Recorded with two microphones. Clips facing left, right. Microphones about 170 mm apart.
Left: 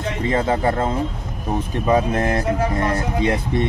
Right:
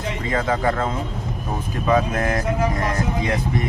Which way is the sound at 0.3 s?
25° left (ahead or behind).